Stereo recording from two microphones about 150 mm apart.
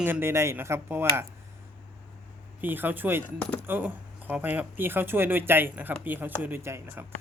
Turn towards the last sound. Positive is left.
turn(degrees=-15)  # may be behind; listen again after turning